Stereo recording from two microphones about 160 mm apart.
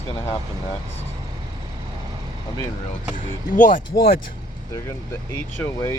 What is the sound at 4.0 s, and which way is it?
Speech, 75° left (ahead or behind).